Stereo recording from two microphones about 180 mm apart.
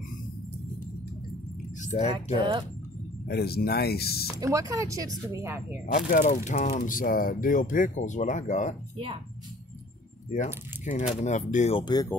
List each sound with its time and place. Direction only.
1.8 s speech: 40° left (ahead or behind)
3.3 s speech: 60° left (ahead or behind)
4.4 s speech: 20° right (ahead or behind)
5.9 s speech: 50° left (ahead or behind)
8.9 s speech: 30° right (ahead or behind)
10.3 s speech: 40° left (ahead or behind)
11.8 s speech: 20° left (ahead or behind)